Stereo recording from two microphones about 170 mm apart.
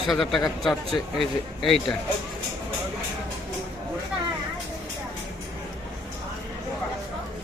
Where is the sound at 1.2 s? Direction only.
Centre (ahead or behind).